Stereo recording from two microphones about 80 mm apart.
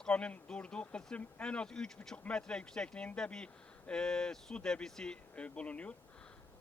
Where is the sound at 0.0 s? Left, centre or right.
Centre.